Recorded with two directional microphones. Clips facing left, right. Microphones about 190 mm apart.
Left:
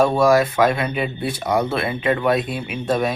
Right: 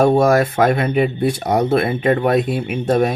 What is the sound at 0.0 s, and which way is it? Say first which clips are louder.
Speech: right 2 dB; 45° right (ahead or behind).